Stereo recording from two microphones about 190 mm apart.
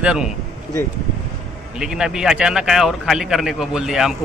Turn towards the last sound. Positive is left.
turn(degrees=0)  # may be behind; listen again after turning